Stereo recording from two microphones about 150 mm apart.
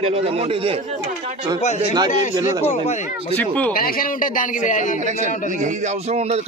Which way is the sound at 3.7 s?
75° left (ahead or behind).